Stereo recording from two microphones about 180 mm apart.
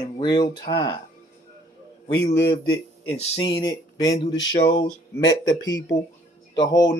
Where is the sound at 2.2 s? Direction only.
75° left (ahead or behind).